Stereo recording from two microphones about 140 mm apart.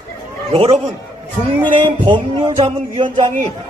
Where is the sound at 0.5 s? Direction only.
40° right (ahead or behind).